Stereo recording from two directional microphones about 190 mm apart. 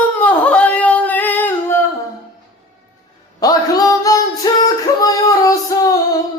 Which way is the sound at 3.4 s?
20° left (ahead or behind).